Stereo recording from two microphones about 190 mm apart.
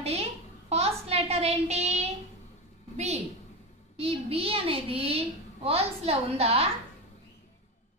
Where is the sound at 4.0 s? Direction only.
30° right (ahead or behind).